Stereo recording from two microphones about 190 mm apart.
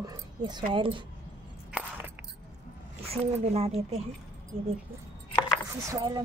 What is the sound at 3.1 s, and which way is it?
Speech, 35° right (ahead or behind).